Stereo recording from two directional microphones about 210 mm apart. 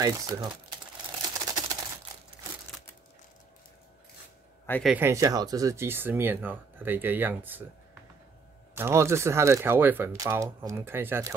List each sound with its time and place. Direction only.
0.0 s speech: 20° right (ahead or behind)
1.4 s typewriter: 15° right (ahead or behind)
4.6 s speech: 10° left (ahead or behind)
4.9 s speech: 15° right (ahead or behind)